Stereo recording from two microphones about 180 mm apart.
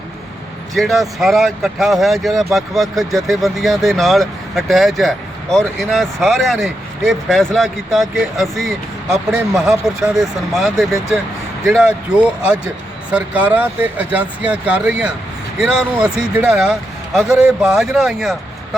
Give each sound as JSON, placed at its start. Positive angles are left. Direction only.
{"t": 0.7, "sound": "speech", "side_deg": 0}